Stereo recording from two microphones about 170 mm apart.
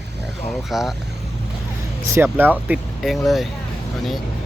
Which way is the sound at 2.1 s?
10° right (ahead or behind).